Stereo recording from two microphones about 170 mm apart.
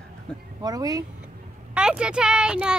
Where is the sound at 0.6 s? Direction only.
20° right (ahead or behind).